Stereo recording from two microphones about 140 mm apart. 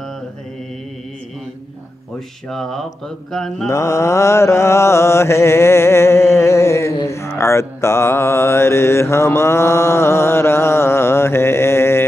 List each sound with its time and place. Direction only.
2.1 s speech: 5° left (ahead or behind)
3.6 s mantra: 20° left (ahead or behind)